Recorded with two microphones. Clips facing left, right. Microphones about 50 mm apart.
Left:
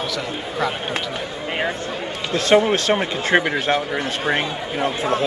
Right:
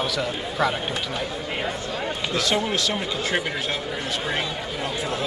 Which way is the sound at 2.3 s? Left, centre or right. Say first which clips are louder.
Left 9 dB; left.